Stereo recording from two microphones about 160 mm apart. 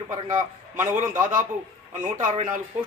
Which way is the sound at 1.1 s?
55° right (ahead or behind).